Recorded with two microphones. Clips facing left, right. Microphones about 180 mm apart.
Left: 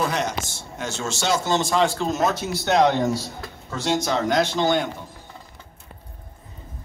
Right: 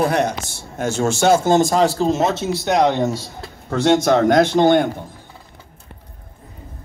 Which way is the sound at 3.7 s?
55° right (ahead or behind).